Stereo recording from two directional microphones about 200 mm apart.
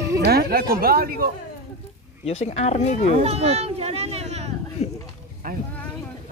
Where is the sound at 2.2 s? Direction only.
30° left (ahead or behind).